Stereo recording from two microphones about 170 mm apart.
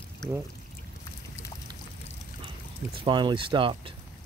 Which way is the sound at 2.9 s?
30° right (ahead or behind).